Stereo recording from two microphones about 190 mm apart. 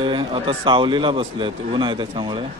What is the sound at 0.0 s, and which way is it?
A man's voice, 25° right (ahead or behind).